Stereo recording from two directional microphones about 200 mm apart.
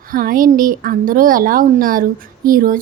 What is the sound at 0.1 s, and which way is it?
Speech, 45° right (ahead or behind).